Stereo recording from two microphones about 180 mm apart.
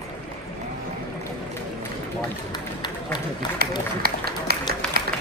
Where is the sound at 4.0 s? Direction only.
60° right (ahead or behind).